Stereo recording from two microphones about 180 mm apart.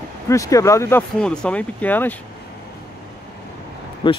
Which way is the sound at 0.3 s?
15° left (ahead or behind).